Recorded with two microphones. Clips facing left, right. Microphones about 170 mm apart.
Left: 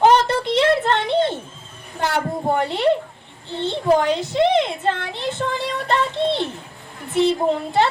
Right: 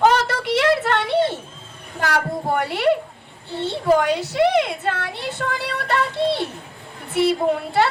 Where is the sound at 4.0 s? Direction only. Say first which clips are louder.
Even; 25° left (ahead or behind).